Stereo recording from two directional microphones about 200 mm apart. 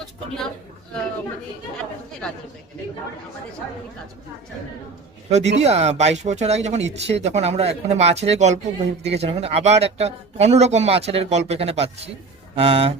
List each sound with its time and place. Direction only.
5.3 s speech: 35° right (ahead or behind)